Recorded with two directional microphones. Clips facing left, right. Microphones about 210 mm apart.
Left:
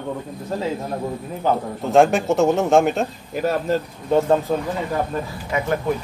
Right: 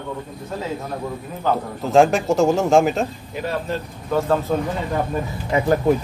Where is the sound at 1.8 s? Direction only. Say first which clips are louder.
Even; centre (ahead or behind).